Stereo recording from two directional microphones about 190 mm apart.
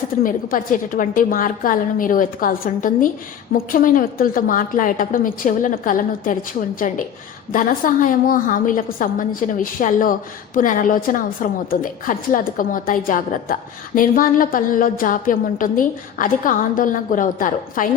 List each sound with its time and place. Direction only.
0.2 s a woman's voice: 45° left (ahead or behind)